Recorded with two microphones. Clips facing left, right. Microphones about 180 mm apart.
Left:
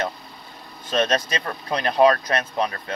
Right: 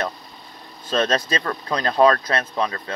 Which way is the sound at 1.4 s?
15° left (ahead or behind).